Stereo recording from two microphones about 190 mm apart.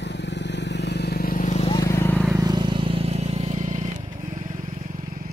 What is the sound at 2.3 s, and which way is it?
Vehicle, 20° right (ahead or behind).